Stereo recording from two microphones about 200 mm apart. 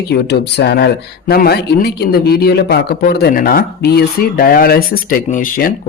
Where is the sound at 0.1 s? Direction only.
55° left (ahead or behind).